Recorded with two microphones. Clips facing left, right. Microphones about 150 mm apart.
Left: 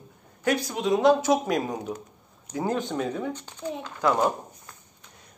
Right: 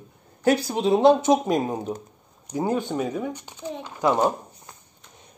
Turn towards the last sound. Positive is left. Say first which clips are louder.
# right 2 dB
turn(degrees=-20)  # may be behind; listen again after turning